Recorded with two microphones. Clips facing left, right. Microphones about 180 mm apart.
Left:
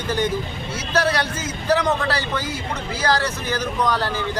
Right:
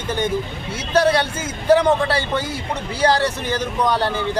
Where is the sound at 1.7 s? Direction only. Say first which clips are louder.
Right 5 dB; 25° right (ahead or behind).